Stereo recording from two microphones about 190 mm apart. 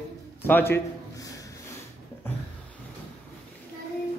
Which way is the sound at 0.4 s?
10° left (ahead or behind).